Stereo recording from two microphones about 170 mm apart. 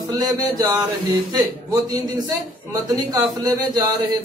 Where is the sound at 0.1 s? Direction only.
25° right (ahead or behind).